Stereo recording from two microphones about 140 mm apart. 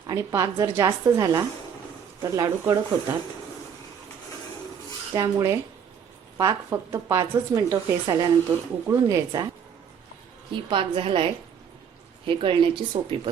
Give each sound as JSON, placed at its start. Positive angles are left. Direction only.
{"t": 0.1, "sound": "speech", "side_deg": -25}
{"t": 5.1, "sound": "speech", "side_deg": -20}
{"t": 10.5, "sound": "speech", "side_deg": -35}